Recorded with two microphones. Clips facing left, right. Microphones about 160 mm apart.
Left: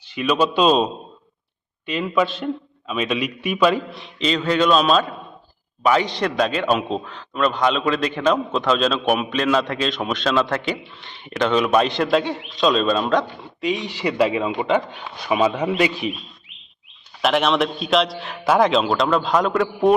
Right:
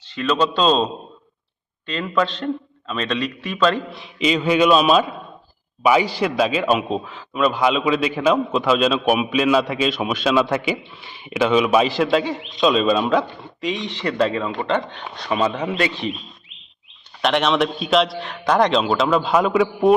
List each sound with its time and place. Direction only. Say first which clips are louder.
0.0 s speech: even; 10° left (ahead or behind)
1.9 s speech: left 1 dB; 10° left (ahead or behind)
3.9 s a man's voice: right 2 dB; 5° right (ahead or behind)
17.2 s a man's voice: even; centre (ahead or behind)